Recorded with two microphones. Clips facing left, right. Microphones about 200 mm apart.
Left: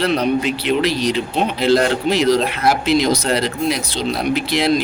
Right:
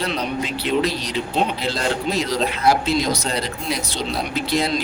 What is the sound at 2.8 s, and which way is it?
Speech, 80° left.